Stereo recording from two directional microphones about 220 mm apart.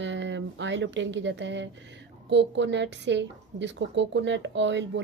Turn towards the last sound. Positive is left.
turn(degrees=-55)  # may be behind; listen again after turning